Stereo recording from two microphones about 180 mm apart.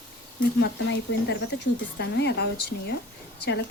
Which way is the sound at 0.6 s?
75° left (ahead or behind).